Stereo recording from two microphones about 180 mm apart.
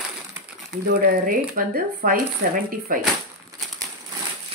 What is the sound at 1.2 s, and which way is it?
Speech, 50° right (ahead or behind).